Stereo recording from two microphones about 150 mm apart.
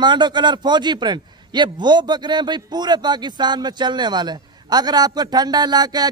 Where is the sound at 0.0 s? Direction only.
30° right (ahead or behind).